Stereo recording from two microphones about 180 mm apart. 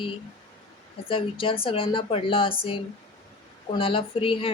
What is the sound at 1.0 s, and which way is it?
Speech, 30° left (ahead or behind).